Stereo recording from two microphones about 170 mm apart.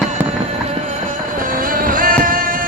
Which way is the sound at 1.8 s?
55° right (ahead or behind).